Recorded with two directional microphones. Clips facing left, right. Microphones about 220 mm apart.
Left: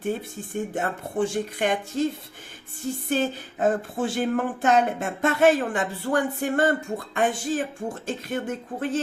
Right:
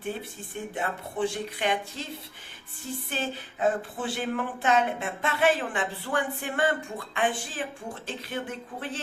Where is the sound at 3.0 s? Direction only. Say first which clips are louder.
Left 9 dB; 45° left (ahead or behind).